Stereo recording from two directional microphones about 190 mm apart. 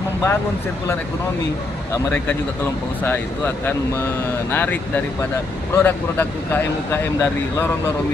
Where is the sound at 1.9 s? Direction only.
10° left (ahead or behind).